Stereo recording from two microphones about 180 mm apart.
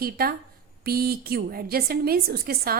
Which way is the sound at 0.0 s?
55° right (ahead or behind).